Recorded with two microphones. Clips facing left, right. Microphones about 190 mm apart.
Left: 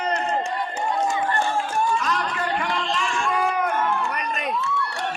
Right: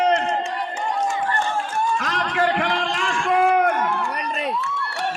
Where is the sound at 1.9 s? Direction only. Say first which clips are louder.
Right 2 dB; 70° right (ahead or behind).